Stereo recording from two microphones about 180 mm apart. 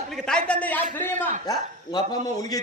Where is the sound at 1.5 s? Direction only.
20° left (ahead or behind).